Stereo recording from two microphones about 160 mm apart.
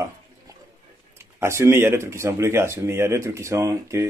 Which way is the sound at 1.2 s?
15° right (ahead or behind).